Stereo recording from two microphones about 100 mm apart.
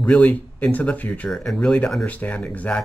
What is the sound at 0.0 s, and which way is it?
Speech, 15° left (ahead or behind).